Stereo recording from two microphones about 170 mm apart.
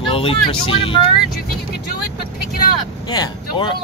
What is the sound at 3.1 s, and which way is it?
Speech, 30° left (ahead or behind).